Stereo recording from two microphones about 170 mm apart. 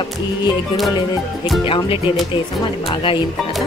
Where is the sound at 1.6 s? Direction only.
30° left (ahead or behind).